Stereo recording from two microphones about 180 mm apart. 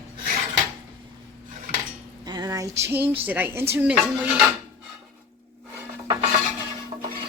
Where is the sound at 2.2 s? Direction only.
20° right (ahead or behind).